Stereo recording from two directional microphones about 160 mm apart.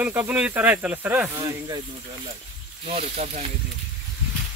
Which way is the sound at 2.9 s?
45° right (ahead or behind).